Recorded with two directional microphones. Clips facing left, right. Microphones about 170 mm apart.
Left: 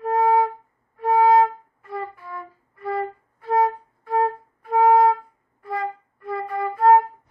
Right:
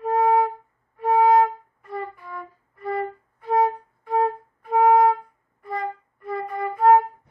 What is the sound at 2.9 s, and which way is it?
Flute, centre (ahead or behind).